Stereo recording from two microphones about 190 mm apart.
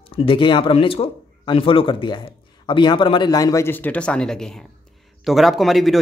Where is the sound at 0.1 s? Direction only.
30° left (ahead or behind).